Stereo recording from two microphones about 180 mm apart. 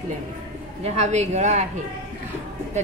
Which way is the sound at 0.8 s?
40° right (ahead or behind).